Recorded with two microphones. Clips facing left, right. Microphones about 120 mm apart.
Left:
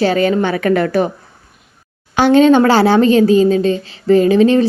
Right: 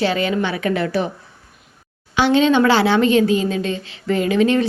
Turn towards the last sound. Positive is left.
turn(degrees=35)  # may be behind; listen again after turning